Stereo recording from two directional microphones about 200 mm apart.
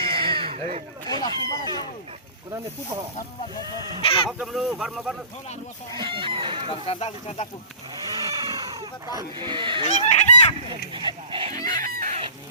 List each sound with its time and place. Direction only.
0.0 s a sound: 25° right (ahead or behind)
1.3 s speech: 25° right (ahead or behind)
4.0 s speech: 25° left (ahead or behind)
4.3 s speech: 5° right (ahead or behind)
6.0 s speech: 25° right (ahead or behind)
6.7 s speech: 25° left (ahead or behind)
8.1 s vehicle: 20° right (ahead or behind)
8.7 s speech: 20° right (ahead or behind)
10.1 s speech: 35° left (ahead or behind)
10.9 s duck: 25° right (ahead or behind)
11.6 s chicken: 45° right (ahead or behind)